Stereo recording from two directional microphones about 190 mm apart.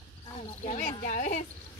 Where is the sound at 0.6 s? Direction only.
40° left (ahead or behind).